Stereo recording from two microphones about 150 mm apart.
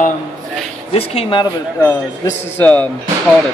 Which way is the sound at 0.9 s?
40° left (ahead or behind).